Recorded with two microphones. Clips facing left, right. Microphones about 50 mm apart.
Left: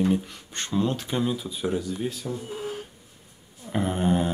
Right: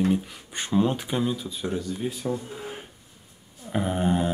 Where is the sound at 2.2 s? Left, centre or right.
Right.